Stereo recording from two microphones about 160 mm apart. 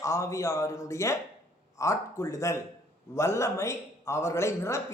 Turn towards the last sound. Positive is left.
turn(degrees=15)  # may be behind; listen again after turning